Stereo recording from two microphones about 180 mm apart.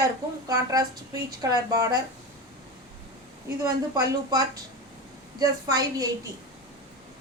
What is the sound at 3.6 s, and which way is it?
A woman's voice, 20° right (ahead or behind).